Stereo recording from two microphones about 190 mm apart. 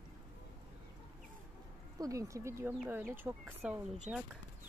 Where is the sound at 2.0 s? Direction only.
15° right (ahead or behind).